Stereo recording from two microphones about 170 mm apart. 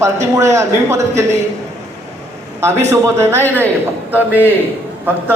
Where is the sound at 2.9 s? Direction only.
15° right (ahead or behind).